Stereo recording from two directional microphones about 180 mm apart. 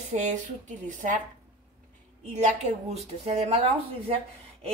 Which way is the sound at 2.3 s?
40° right (ahead or behind).